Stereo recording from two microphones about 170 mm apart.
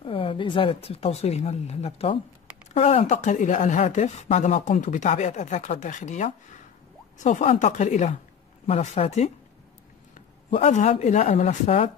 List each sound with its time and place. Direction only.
0.0 s speech: 30° left (ahead or behind)